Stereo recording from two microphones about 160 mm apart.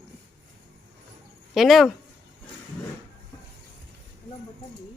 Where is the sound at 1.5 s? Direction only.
Centre (ahead or behind).